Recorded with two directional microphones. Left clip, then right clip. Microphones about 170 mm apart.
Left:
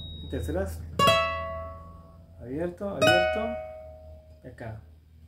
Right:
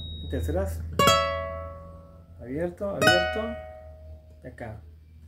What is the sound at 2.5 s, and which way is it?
Speech, 15° right (ahead or behind).